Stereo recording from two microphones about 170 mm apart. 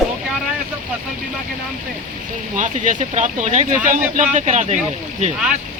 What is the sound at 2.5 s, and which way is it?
Speech, 50° right (ahead or behind).